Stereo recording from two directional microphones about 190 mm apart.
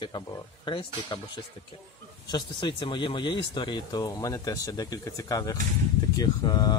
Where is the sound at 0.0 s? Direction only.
25° left (ahead or behind).